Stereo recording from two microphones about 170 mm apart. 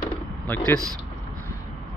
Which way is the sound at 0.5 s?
10° left (ahead or behind).